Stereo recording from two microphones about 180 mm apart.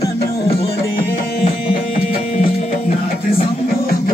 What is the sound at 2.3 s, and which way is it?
Music, 40° left (ahead or behind).